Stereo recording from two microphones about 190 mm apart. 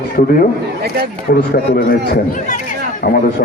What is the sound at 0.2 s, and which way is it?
Speech, 50° left (ahead or behind).